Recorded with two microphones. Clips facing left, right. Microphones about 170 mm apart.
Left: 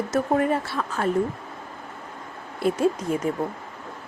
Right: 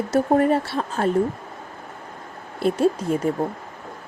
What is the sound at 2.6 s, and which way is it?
Speech, 30° right (ahead or behind).